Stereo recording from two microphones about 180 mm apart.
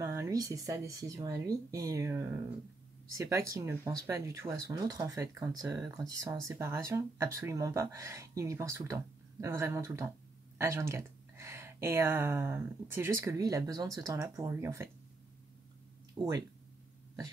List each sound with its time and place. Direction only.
0.0 s speech: 15° right (ahead or behind)
16.2 s speech: 30° right (ahead or behind)